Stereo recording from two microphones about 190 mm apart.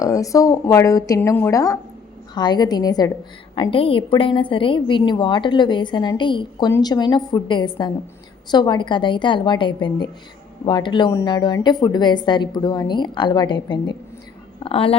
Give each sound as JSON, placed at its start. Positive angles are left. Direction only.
{"t": 0.0, "sound": "a woman's voice", "side_deg": 15}